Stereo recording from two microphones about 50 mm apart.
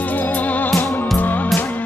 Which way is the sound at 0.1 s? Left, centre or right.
Left.